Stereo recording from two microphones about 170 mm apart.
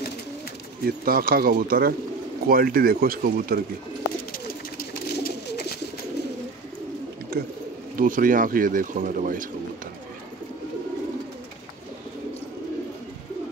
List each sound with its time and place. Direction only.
0.8 s speech: 60° right (ahead or behind)
4.3 s bird: 60° left (ahead or behind); by 5.8 s 75° left (ahead or behind)
8.0 s speech: 55° right (ahead or behind)